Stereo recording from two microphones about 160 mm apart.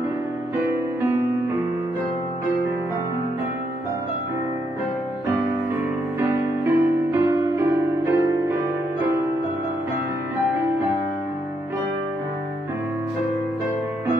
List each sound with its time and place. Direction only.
6.1 s music: 15° right (ahead or behind)